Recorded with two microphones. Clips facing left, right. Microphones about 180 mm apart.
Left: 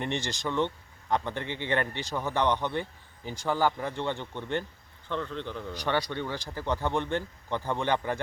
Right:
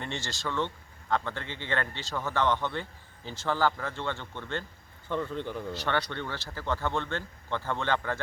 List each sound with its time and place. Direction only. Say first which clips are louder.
0.0 s speech: left 4 dB; 20° left (ahead or behind)
5.0 s speech: right 2 dB; 10° right (ahead or behind)
5.7 s speech: left 3 dB; 15° left (ahead or behind)